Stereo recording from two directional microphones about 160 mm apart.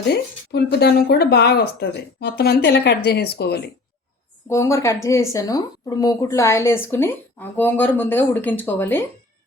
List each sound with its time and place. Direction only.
0.1 s speech: 90° left
4.4 s a woman's voice: 15° left (ahead or behind)